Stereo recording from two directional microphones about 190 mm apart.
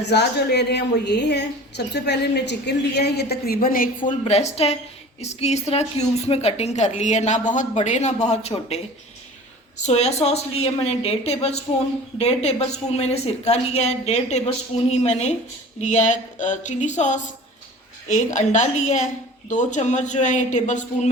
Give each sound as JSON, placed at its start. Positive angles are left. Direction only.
{"t": 0.0, "sound": "a woman's voice", "side_deg": 60}